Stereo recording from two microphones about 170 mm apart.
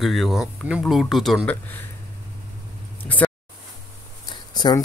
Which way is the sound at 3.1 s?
10° left (ahead or behind).